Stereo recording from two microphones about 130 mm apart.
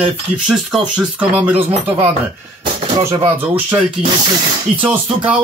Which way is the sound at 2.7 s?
30° right (ahead or behind).